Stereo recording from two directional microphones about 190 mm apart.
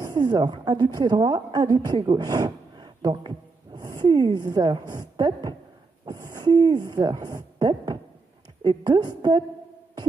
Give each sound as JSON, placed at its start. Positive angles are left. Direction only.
{"t": 0.0, "sound": "a woman's voice", "side_deg": -20}